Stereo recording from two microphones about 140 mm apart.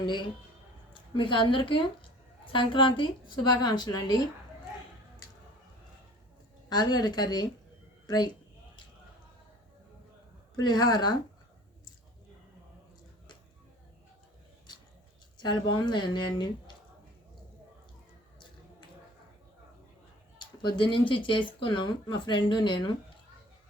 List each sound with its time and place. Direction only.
0.0 s a woman's voice: 35° left (ahead or behind)
6.7 s a woman's voice: 30° left (ahead or behind)
10.6 s a woman's voice: 30° left (ahead or behind)
15.4 s a woman's voice: 30° left (ahead or behind)
20.6 s a woman's voice: 35° left (ahead or behind)